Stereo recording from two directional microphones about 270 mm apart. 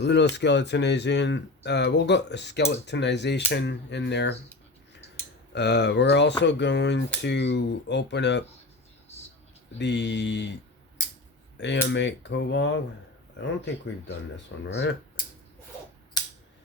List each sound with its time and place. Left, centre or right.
0.0 s speech: left
5.5 s speech: left
9.7 s speech: left
11.5 s speech: left